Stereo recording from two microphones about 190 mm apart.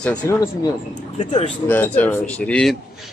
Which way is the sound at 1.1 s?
40° left (ahead or behind).